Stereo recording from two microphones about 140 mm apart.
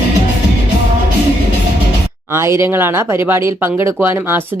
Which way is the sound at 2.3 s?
20° right (ahead or behind).